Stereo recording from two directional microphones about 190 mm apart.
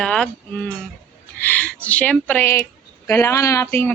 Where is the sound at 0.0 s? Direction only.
5° left (ahead or behind).